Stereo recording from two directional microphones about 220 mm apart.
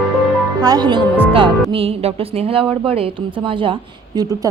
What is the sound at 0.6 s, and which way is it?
A woman's voice, 20° right (ahead or behind).